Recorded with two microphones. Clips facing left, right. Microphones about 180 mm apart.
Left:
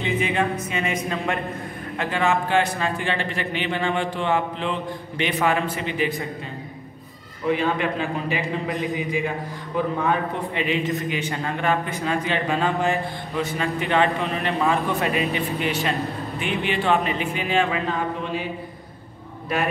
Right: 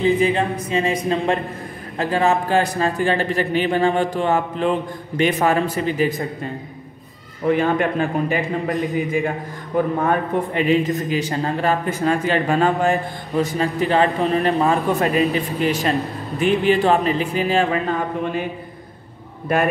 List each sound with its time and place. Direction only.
0.0 s speech: 35° right (ahead or behind)
7.4 s a man's voice: 50° right (ahead or behind)